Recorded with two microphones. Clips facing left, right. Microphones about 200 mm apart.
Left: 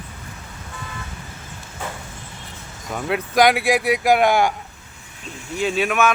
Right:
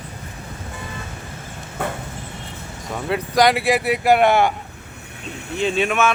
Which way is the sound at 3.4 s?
Centre (ahead or behind).